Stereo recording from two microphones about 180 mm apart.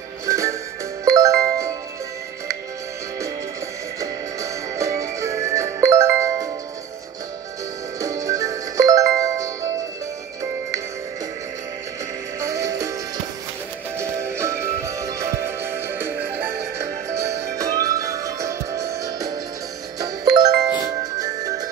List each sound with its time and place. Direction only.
0.3 s music: 15° right (ahead or behind)
1.0 s jingle: 20° right (ahead or behind)
4.0 s music: 20° right (ahead or behind)
8.0 s music: 20° right (ahead or behind)
12.4 s music: 15° right (ahead or behind)
13.9 s music: 15° right (ahead or behind)